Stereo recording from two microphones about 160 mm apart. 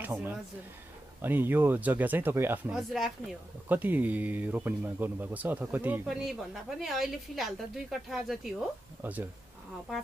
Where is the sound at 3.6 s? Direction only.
10° right (ahead or behind).